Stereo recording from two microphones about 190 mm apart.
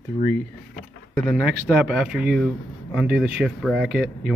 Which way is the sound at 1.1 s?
5° right (ahead or behind).